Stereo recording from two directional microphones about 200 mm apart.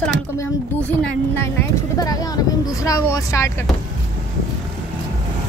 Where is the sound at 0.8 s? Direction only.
10° left (ahead or behind).